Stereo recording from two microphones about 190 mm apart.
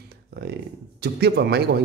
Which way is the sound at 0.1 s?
60° right (ahead or behind).